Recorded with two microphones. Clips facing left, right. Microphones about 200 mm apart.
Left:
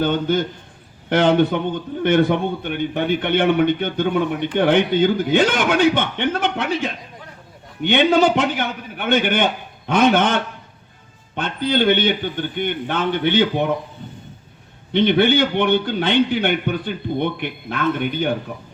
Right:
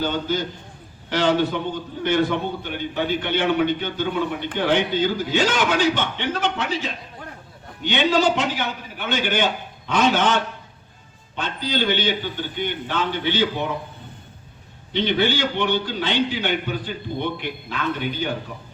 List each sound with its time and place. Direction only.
0.0 s a man's voice: 55° left (ahead or behind)
14.9 s a man's voice: 55° left (ahead or behind)